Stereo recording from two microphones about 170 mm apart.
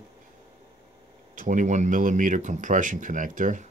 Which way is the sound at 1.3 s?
45° right (ahead or behind).